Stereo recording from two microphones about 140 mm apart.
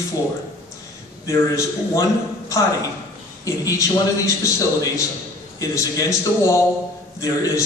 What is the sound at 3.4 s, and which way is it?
A man's voice, 25° left (ahead or behind).